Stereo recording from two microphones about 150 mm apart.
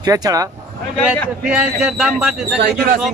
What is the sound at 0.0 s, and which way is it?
Speech, 25° right (ahead or behind).